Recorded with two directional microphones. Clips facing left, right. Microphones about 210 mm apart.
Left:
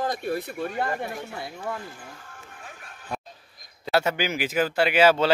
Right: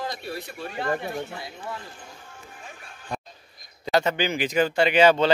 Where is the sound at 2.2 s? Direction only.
15° right (ahead or behind).